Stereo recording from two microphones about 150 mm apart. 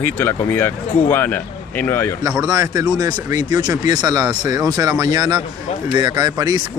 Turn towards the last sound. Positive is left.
turn(degrees=-25)  # may be behind; listen again after turning